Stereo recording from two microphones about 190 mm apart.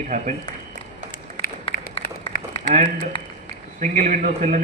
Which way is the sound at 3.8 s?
45° right (ahead or behind).